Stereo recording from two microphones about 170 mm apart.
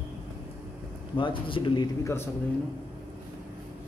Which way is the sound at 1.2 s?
30° left (ahead or behind).